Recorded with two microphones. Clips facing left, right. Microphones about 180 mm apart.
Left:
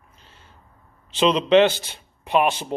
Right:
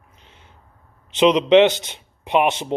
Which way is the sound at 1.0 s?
15° right (ahead or behind).